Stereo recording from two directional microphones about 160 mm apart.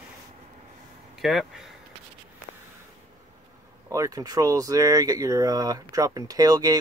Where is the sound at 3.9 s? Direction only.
20° right (ahead or behind).